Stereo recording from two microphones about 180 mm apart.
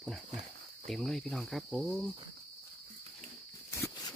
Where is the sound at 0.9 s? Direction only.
Centre (ahead or behind).